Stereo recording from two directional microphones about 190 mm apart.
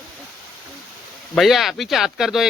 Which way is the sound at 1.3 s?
Centre (ahead or behind).